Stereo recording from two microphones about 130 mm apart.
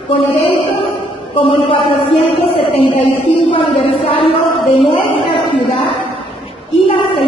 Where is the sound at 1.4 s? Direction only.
45° left (ahead or behind).